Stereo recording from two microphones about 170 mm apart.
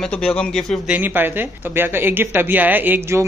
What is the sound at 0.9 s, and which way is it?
Speech, 10° right (ahead or behind).